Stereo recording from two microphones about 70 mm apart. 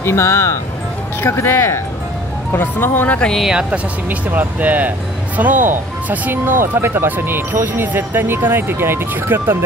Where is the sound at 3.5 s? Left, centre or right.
Centre.